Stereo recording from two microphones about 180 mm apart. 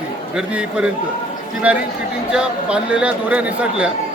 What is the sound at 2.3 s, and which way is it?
Speech, 5° right (ahead or behind).